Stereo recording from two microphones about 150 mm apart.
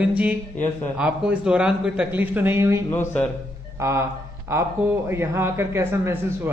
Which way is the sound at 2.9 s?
10° left (ahead or behind).